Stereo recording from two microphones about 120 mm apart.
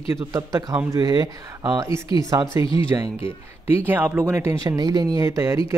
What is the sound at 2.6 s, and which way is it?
Speech, 45° left (ahead or behind).